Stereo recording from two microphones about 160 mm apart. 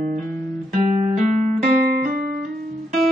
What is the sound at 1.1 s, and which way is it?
Music, 65° right (ahead or behind).